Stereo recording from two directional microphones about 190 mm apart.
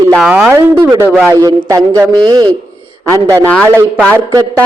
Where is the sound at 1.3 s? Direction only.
20° right (ahead or behind).